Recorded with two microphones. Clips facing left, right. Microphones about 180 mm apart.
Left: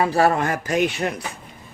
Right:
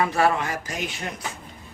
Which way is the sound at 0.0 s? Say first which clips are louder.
Left 3 dB; 35° left (ahead or behind).